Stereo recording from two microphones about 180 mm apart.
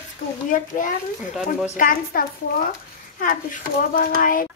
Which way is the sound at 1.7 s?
55° left (ahead or behind).